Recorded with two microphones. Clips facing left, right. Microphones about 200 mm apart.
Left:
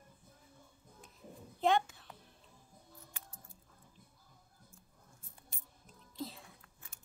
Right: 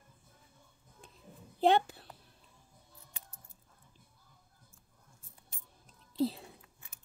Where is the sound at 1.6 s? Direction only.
35° right (ahead or behind).